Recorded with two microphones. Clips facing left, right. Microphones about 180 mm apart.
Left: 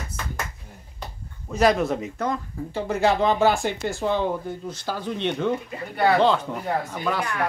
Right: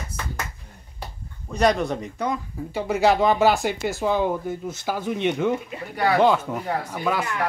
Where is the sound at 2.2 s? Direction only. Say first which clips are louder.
Even; 10° right (ahead or behind).